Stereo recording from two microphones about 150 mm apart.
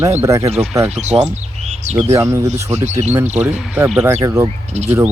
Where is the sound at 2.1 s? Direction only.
20° right (ahead or behind).